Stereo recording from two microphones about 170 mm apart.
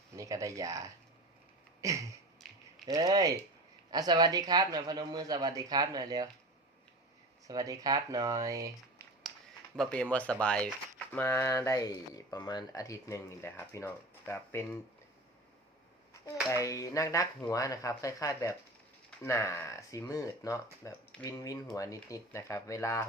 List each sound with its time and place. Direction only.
0.2 s speech: 20° right (ahead or behind)
2.4 s typing: centre (ahead or behind)
2.9 s speech: 20° right (ahead or behind)
7.4 s speech: 20° right (ahead or behind)
9.7 s speech: 5° left (ahead or behind)
16.2 s speech: 20° left (ahead or behind)